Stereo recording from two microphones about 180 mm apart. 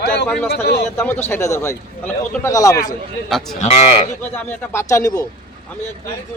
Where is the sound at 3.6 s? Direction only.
40° left (ahead or behind).